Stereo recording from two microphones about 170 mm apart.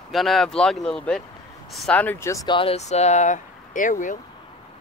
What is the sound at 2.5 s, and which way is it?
Speech, 35° left (ahead or behind).